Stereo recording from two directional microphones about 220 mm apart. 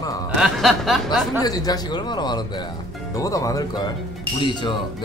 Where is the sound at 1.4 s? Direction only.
15° left (ahead or behind).